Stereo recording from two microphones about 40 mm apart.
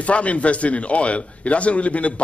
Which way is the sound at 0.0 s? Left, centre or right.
Left.